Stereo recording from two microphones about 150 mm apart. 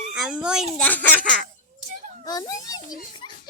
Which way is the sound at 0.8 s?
10° left (ahead or behind).